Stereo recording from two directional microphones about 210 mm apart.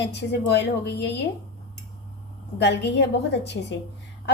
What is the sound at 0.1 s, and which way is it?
Speech, 55° left (ahead or behind).